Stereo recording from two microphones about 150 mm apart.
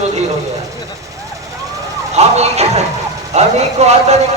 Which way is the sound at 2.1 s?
45° right (ahead or behind).